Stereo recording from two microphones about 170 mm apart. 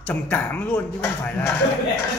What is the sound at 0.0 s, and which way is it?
Music, 10° left (ahead or behind).